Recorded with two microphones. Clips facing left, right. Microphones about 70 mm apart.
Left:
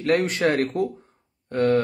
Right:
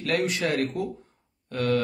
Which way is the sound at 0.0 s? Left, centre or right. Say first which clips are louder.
Left 5 dB; left.